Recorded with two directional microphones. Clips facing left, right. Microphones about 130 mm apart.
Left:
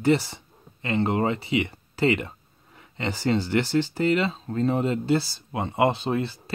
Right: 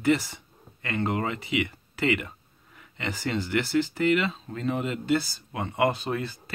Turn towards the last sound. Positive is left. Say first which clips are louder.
# left 3 dB
turn(degrees=25)  # may be behind; listen again after turning